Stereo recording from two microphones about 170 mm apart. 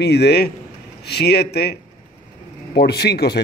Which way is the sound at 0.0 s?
80° left.